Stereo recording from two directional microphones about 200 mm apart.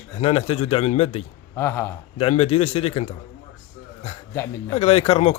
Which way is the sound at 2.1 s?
30° left (ahead or behind).